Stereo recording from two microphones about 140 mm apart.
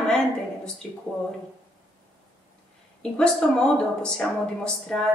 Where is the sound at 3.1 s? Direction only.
5° left (ahead or behind).